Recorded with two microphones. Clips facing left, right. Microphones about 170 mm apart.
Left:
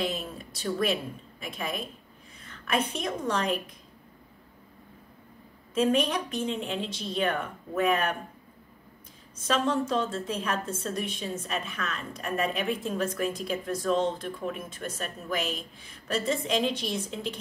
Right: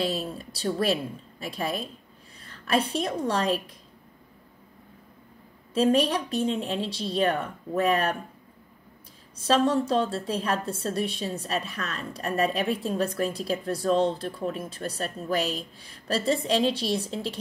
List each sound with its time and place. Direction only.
0.0 s a woman's voice: 35° right (ahead or behind)
5.8 s a woman's voice: 35° right (ahead or behind)
9.5 s a woman's voice: 35° right (ahead or behind)